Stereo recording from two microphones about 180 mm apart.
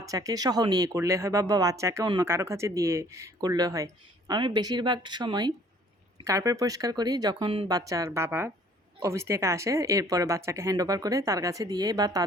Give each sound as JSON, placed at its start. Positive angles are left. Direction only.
{"t": 0.0, "sound": "speech", "side_deg": -20}